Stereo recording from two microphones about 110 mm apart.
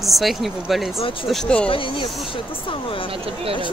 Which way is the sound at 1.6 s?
55° left (ahead or behind).